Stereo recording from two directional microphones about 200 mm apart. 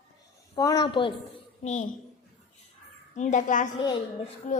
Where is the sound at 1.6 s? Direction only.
35° left (ahead or behind).